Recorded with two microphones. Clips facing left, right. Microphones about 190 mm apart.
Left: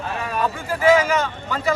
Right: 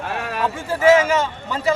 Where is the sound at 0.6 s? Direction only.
25° right (ahead or behind).